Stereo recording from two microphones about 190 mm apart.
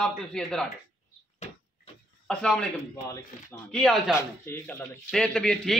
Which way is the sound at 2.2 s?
Centre (ahead or behind).